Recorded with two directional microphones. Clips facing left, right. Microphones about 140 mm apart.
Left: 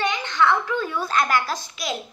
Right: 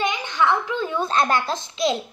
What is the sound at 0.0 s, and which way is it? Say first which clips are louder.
Babbling: even; 15° right (ahead or behind).